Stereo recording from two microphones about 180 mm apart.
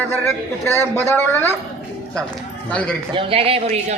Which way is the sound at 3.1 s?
30° right (ahead or behind).